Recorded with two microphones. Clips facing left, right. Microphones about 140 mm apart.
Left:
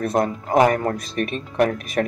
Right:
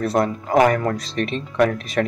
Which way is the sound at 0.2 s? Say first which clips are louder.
Even; 35° left (ahead or behind).